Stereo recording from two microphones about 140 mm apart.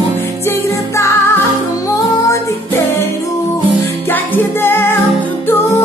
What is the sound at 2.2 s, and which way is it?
Music, 20° left (ahead or behind).